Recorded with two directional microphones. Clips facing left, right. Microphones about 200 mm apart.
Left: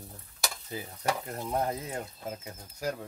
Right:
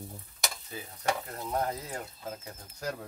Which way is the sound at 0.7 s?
25° left (ahead or behind).